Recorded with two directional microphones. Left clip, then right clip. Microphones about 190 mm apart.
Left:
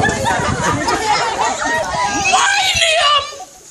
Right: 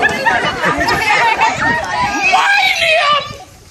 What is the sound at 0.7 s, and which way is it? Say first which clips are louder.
Chatter: right 3 dB; 35° right (ahead or behind).